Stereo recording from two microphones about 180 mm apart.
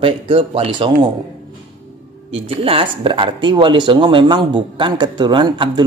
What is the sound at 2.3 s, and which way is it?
Speech, 30° right (ahead or behind).